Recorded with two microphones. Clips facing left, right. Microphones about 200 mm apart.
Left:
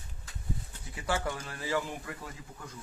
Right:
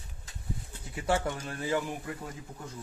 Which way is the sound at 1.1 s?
25° right (ahead or behind).